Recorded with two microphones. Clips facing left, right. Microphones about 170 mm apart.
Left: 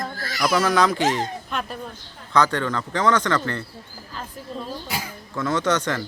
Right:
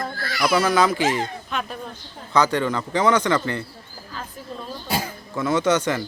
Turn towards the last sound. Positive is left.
turn(degrees=-5)  # may be behind; listen again after turning